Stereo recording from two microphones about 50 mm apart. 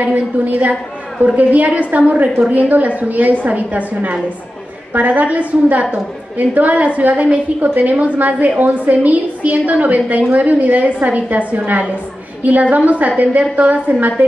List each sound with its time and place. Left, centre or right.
0.0 s a woman's voice: right